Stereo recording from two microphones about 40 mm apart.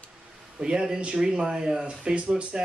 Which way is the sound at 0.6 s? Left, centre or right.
Centre.